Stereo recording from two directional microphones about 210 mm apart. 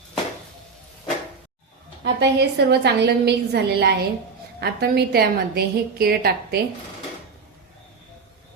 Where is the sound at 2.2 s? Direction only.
55° right (ahead or behind).